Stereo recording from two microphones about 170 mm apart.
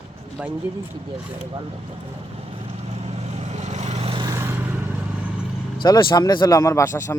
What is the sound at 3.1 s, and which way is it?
Vehicle, 40° right (ahead or behind).